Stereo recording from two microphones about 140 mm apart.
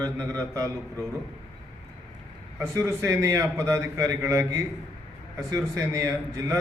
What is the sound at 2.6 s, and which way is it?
A man's voice, 20° right (ahead or behind).